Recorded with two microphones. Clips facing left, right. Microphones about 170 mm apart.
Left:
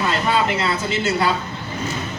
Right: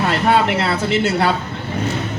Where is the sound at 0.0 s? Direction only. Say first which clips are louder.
Right 4 dB; 65° right (ahead or behind).